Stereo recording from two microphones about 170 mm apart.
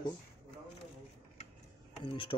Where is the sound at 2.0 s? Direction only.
30° left (ahead or behind).